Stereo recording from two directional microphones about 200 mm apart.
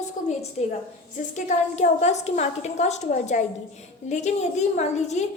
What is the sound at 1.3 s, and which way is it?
A woman's voice, 35° left (ahead or behind).